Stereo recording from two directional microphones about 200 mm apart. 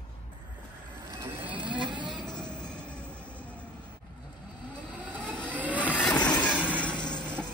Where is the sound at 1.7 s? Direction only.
25° right (ahead or behind).